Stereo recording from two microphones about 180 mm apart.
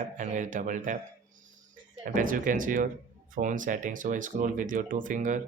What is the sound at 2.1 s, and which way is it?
Speech, 50° right (ahead or behind).